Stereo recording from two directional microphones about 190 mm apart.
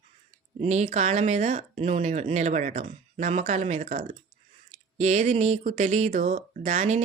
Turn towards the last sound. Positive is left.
turn(degrees=-40)  # may be behind; listen again after turning